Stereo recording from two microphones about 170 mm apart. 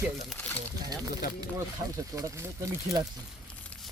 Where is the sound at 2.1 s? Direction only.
20° right (ahead or behind).